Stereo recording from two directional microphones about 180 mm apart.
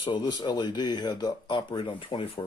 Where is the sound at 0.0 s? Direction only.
25° left (ahead or behind).